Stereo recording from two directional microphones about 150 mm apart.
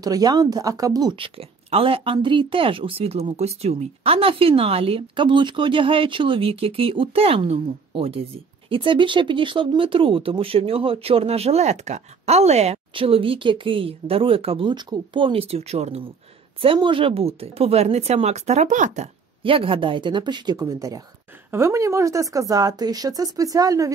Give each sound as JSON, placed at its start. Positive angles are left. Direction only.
{"t": 0.0, "sound": "speech", "side_deg": -25}
{"t": 19.4, "sound": "speech", "side_deg": -35}